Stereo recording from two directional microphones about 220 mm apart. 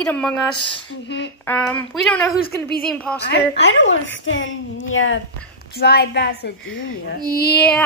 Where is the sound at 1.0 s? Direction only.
50° left (ahead or behind).